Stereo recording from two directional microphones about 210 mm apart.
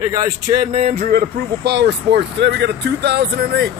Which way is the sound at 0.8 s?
40° right (ahead or behind).